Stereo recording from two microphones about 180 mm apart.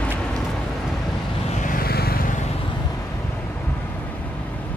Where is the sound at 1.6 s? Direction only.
50° left (ahead or behind).